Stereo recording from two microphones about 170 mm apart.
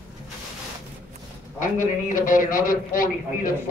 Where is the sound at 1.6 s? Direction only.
50° left (ahead or behind).